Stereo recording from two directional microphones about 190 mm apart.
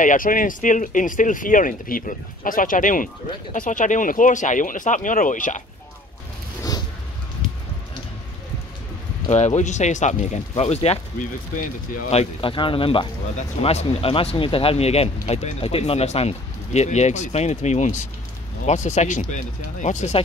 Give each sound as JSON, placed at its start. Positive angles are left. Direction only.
{"t": 0.0, "sound": "speech", "side_deg": 45}
{"t": 9.3, "sound": "speech", "side_deg": 40}